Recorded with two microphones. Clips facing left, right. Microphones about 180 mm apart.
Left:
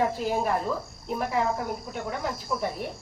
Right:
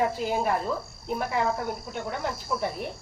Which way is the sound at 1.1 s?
Centre (ahead or behind).